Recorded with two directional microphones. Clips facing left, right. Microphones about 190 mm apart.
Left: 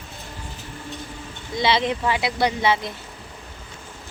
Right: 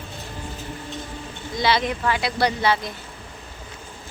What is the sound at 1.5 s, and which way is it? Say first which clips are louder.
Speech: left 1 dB; 25° left (ahead or behind).